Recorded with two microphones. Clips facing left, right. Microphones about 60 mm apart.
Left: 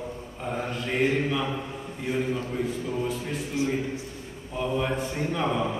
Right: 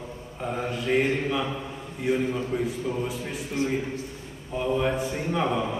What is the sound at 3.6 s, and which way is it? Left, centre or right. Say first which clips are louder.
Speech: even; right.